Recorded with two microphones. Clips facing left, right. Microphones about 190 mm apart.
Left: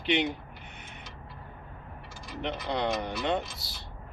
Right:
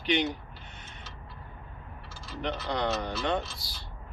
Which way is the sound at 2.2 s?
15° left (ahead or behind).